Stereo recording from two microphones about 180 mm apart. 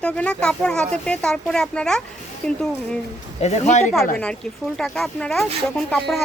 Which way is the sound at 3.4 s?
40° left (ahead or behind).